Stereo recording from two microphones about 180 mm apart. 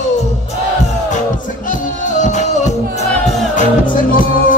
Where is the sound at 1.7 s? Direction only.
45° left (ahead or behind).